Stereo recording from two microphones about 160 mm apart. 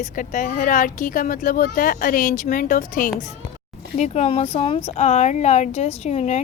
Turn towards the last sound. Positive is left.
turn(degrees=45)  # may be behind; listen again after turning